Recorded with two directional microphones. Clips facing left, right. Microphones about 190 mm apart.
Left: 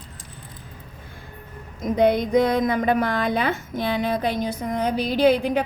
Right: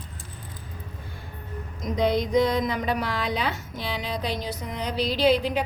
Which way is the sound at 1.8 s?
55° left (ahead or behind).